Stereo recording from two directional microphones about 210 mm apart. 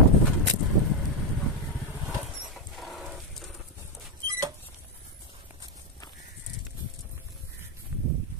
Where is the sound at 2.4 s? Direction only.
Centre (ahead or behind).